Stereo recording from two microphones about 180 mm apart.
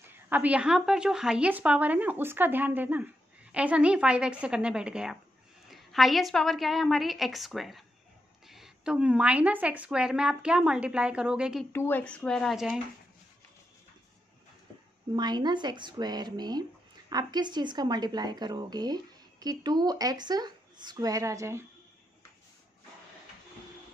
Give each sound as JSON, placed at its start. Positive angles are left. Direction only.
{"t": 0.1, "sound": "speech", "side_deg": -10}
{"t": 11.7, "sound": "speech", "side_deg": 10}
{"t": 15.1, "sound": "a woman's voice", "side_deg": -25}